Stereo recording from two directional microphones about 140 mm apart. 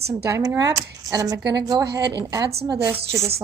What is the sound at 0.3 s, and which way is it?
A woman's voice, 25° right (ahead or behind).